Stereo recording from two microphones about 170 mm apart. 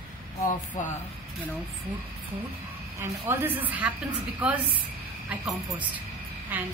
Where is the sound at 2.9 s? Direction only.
15° right (ahead or behind).